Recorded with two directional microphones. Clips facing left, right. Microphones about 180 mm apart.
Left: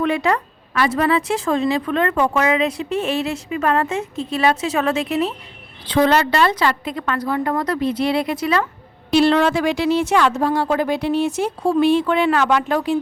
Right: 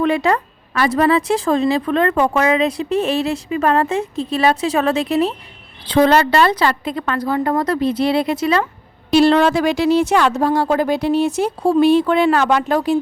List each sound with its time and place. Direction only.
0.0 s speech: 35° right (ahead or behind)
9.1 s speech: 40° right (ahead or behind)